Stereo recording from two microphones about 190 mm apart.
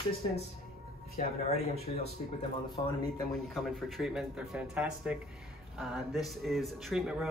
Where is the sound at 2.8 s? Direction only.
25° left (ahead or behind).